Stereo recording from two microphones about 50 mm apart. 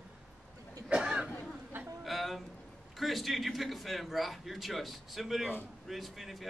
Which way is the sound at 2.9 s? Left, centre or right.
Centre.